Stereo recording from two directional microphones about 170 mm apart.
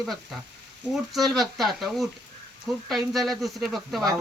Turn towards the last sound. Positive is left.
turn(degrees=0)  # may be behind; listen again after turning